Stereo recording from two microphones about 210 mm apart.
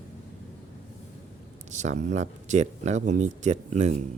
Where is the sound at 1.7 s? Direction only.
35° right (ahead or behind).